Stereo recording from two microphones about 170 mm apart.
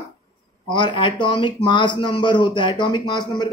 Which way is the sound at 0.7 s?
25° left (ahead or behind).